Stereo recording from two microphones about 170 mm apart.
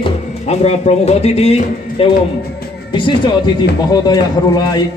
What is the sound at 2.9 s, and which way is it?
Speech, 30° left (ahead or behind).